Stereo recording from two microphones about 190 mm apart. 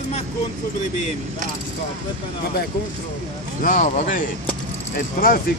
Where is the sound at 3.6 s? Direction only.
40° left (ahead or behind).